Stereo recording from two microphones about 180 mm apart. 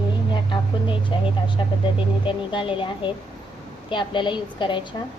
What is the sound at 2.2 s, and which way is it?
A woman's voice, 25° left (ahead or behind).